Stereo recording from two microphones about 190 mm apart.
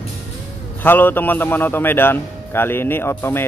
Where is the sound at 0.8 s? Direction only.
10° left (ahead or behind).